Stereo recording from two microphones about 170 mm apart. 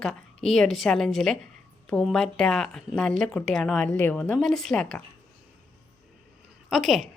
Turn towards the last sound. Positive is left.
turn(degrees=0)  # may be behind; listen again after turning